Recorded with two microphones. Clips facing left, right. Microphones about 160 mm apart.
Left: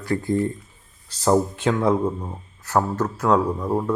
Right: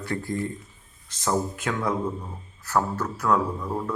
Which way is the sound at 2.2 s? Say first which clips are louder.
Left 5 dB; 45° left (ahead or behind).